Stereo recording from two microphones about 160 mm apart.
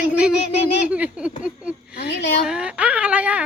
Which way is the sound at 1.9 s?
90° left.